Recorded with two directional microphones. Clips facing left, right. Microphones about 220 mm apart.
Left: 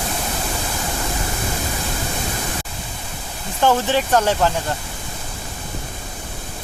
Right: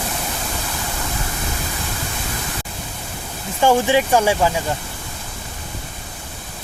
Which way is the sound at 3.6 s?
10° right (ahead or behind).